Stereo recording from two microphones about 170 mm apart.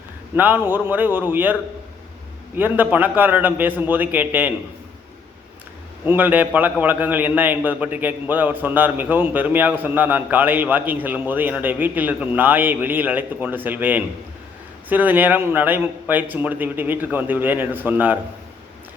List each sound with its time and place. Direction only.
0.3 s a man's voice: 10° right (ahead or behind)
2.6 s a man's voice: 10° right (ahead or behind)
6.1 s a man's voice: 10° right (ahead or behind)